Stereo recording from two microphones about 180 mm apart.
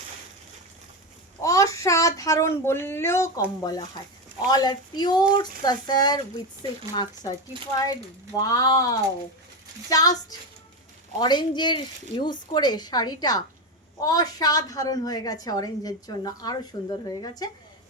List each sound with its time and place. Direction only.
1.4 s a woman's voice: 20° left (ahead or behind)
8.4 s a woman's voice: 20° left (ahead or behind)